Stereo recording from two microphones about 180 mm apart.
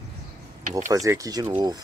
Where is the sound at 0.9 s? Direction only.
20° right (ahead or behind).